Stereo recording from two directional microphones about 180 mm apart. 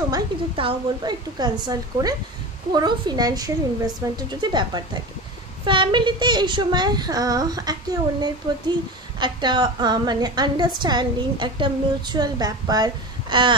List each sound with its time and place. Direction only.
0.1 s a woman's voice: 25° right (ahead or behind)